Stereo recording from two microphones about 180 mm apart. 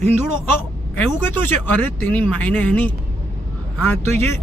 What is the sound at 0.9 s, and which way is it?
Speech, 10° left (ahead or behind).